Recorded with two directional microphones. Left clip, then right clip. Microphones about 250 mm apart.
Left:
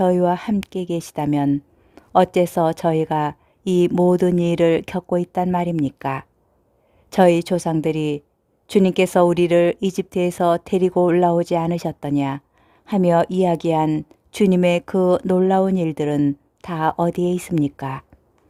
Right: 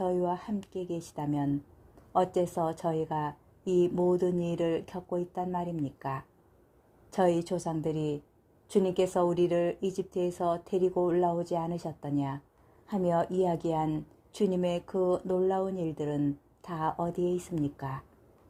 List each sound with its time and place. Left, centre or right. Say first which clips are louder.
0.0 s a woman's voice: left 13 dB; left